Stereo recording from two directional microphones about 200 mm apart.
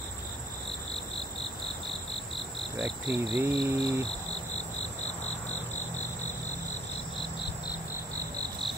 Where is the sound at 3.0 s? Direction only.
30° left (ahead or behind).